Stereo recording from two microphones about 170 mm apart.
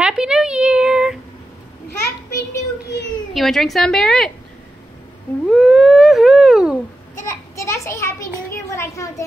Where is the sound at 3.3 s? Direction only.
Centre (ahead or behind).